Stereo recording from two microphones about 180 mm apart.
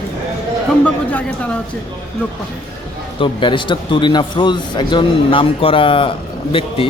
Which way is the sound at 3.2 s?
25° left (ahead or behind).